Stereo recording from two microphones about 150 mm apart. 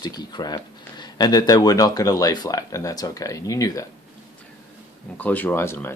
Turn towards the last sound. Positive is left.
turn(degrees=15)  # may be behind; listen again after turning